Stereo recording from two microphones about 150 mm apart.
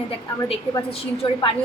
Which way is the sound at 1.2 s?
35° left (ahead or behind).